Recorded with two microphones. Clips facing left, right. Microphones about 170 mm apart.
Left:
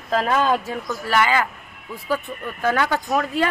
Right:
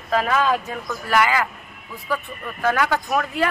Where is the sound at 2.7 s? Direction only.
30° left (ahead or behind).